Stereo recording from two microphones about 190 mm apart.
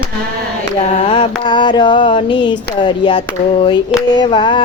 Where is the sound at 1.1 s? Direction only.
25° left (ahead or behind).